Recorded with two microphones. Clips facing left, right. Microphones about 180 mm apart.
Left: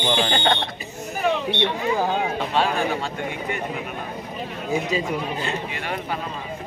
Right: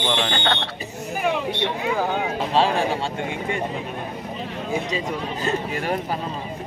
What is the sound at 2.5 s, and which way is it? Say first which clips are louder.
Speech: right 3 dB; 30° right (ahead or behind).